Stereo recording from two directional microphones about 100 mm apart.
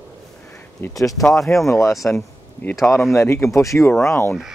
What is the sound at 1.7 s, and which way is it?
Speech, 30° left (ahead or behind).